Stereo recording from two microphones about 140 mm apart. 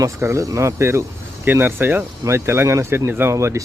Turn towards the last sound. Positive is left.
turn(degrees=-20)  # may be behind; listen again after turning